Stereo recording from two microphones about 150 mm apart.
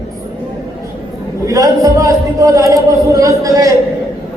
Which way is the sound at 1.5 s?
20° right (ahead or behind).